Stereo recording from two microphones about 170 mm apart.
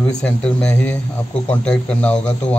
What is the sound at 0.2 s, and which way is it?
A man's voice, 5° left (ahead or behind).